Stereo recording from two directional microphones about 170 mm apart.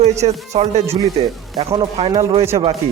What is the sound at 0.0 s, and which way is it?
Speech, 40° right (ahead or behind).